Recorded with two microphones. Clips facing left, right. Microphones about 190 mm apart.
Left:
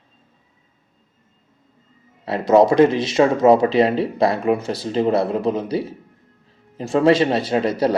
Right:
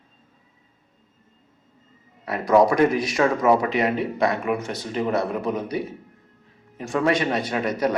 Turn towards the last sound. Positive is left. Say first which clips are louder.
# left 5 dB
turn(degrees=30)  # may be behind; listen again after turning